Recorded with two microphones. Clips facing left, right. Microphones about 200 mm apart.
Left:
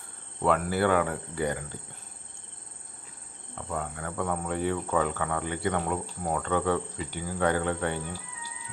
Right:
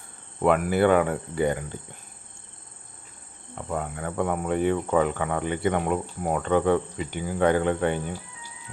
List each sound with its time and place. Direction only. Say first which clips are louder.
0.4 s speech: right 5 dB; 15° right (ahead or behind)
3.7 s speech: right 4 dB; 20° right (ahead or behind)